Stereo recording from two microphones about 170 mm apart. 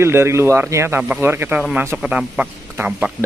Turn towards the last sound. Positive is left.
turn(degrees=-5)  # may be behind; listen again after turning